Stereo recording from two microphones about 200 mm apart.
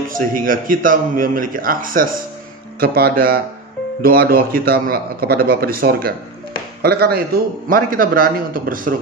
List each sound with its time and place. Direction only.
0.1 s a man's voice: 45° right (ahead or behind)